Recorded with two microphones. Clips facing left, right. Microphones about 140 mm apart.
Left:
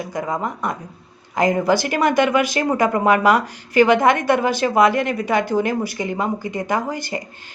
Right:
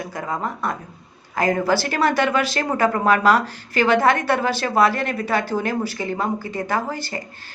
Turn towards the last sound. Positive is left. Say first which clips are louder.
# left 2 dB
turn(degrees=15)  # may be behind; listen again after turning